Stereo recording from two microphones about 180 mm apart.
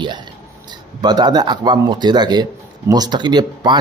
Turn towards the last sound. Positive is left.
turn(degrees=-25)  # may be behind; listen again after turning